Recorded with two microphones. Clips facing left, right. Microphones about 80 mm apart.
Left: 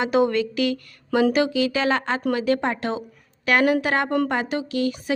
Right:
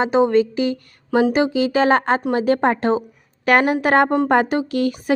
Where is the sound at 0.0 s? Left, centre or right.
Right.